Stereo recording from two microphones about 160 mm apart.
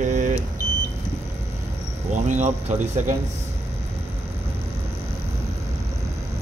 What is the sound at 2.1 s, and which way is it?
Speech, 50° right (ahead or behind).